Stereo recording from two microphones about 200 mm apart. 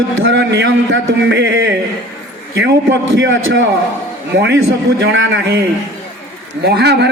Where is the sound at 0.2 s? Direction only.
70° right (ahead or behind).